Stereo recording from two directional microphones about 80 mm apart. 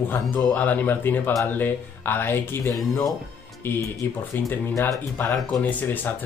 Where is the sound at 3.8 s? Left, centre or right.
Left.